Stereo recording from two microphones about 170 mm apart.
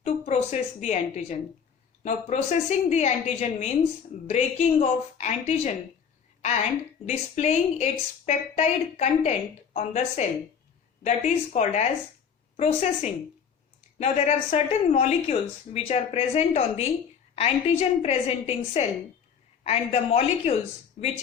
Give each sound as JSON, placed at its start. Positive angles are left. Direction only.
{"t": 0.0, "sound": "a woman's voice", "side_deg": 40}
{"t": 7.0, "sound": "a woman's voice", "side_deg": 45}